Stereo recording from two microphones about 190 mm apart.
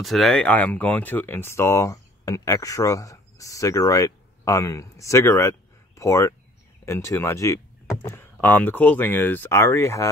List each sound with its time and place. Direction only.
0.0 s speech: centre (ahead or behind)